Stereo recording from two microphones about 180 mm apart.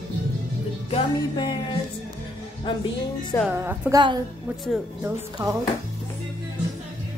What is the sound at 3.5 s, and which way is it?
Speech, 15° right (ahead or behind).